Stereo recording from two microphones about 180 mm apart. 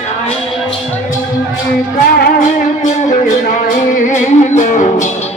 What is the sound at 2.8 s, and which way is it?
Music, 45° left (ahead or behind).